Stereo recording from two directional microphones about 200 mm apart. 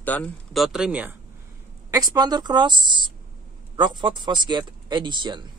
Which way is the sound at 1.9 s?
20° right (ahead or behind).